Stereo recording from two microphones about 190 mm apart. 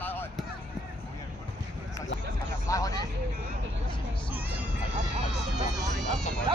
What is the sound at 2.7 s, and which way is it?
Speech, 20° left (ahead or behind).